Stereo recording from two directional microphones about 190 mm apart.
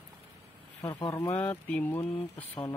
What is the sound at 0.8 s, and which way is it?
Speech, 25° left (ahead or behind).